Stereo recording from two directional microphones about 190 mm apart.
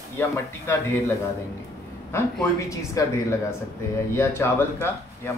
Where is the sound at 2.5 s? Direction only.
15° left (ahead or behind).